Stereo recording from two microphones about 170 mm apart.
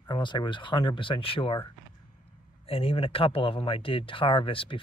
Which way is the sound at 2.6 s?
35° left (ahead or behind).